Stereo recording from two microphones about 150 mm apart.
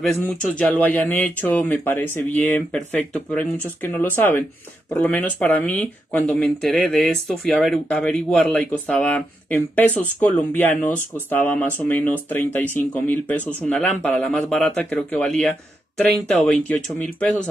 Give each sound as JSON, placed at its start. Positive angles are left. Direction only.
{"t": 0.1, "sound": "speech", "side_deg": 5}